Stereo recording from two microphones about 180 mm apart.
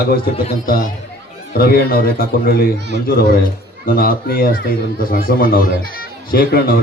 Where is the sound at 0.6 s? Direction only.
50° left (ahead or behind).